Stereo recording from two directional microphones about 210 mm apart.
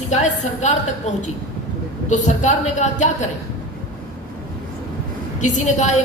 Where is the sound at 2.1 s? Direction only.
35° left (ahead or behind).